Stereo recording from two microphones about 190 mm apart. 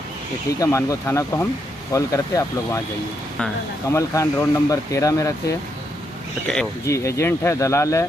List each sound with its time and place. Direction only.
0.6 s speech: 15° left (ahead or behind)
3.9 s speech: 15° left (ahead or behind)
6.4 s speech: 5° left (ahead or behind)
6.9 s speech: 15° left (ahead or behind)